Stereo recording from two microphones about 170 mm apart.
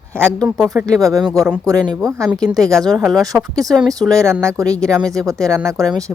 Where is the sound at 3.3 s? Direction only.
20° right (ahead or behind).